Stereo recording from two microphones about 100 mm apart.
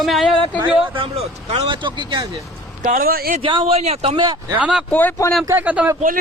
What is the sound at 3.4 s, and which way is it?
Speech, 60° right (ahead or behind).